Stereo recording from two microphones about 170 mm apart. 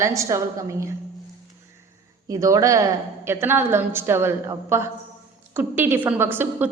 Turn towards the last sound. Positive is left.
turn(degrees=-10)  # may be behind; listen again after turning